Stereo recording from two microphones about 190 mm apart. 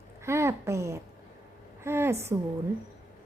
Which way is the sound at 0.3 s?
15° right (ahead or behind).